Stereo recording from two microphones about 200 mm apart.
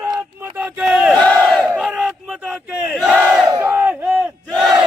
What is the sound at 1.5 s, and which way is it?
Battle cry, 5° right (ahead or behind).